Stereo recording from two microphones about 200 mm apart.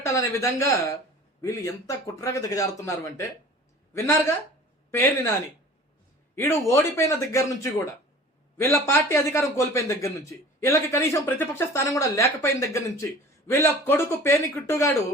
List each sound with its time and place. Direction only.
0.0 s a man's voice: 15° left (ahead or behind)
6.3 s a man's voice: 15° left (ahead or behind)